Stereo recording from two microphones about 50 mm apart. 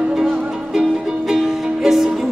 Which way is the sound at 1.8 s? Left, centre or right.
Centre.